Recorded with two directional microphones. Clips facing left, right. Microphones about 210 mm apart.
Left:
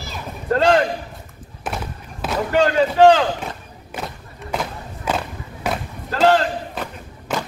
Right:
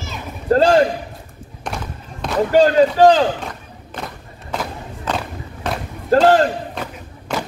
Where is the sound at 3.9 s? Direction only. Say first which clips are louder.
Even; 10° left (ahead or behind).